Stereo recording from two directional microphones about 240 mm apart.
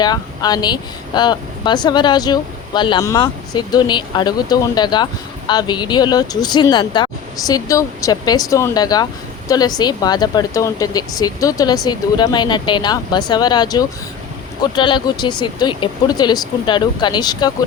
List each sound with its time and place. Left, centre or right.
0.0 s speech: centre